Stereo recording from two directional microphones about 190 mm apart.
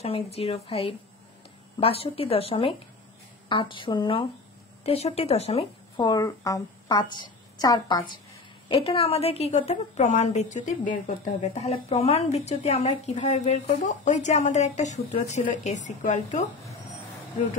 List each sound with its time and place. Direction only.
0.0 s a woman's voice: 30° left (ahead or behind)
5.9 s a woman's voice: 20° left (ahead or behind); by 16.4 s 40° left (ahead or behind)